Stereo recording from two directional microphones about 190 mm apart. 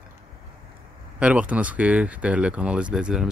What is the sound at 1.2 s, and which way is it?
Speech, 5° right (ahead or behind).